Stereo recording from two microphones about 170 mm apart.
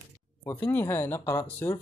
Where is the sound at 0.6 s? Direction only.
15° left (ahead or behind).